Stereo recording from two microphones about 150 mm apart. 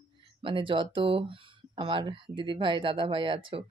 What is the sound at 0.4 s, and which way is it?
Speech, 35° right (ahead or behind).